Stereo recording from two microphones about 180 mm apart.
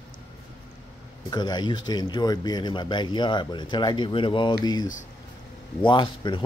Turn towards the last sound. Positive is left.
turn(degrees=25)  # may be behind; listen again after turning